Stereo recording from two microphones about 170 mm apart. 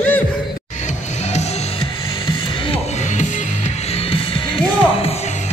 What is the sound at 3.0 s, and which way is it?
Music, 45° left (ahead or behind).